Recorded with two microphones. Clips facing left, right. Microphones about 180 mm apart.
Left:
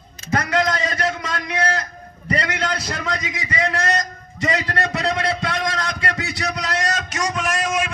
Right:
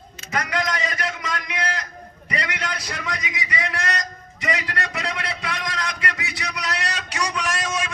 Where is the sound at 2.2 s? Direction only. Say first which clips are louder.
Left 6 dB; 40° left (ahead or behind).